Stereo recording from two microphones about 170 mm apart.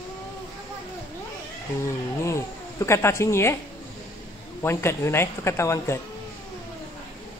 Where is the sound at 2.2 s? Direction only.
15° left (ahead or behind).